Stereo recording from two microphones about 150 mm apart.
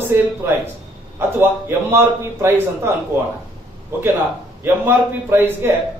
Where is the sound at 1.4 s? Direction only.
15° right (ahead or behind).